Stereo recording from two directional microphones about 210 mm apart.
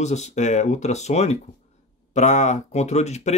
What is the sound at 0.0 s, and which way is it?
Speech, 30° left (ahead or behind).